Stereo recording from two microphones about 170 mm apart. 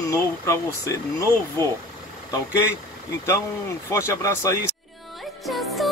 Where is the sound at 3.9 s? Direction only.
15° left (ahead or behind).